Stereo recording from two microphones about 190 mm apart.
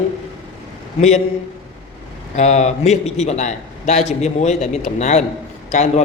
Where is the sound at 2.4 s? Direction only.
35° left (ahead or behind).